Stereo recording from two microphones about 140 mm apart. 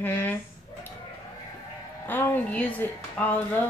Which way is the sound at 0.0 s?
15° left (ahead or behind).